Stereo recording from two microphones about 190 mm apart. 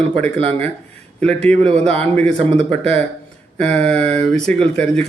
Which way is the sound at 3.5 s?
5° left (ahead or behind).